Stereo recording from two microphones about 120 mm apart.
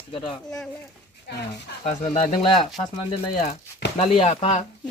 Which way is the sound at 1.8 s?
75° left (ahead or behind).